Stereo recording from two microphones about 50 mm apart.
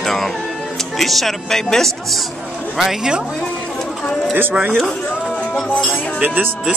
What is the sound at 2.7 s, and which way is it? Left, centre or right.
Speech, centre.